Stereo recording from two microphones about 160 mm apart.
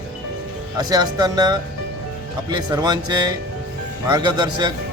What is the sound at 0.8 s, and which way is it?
Speech, 25° right (ahead or behind).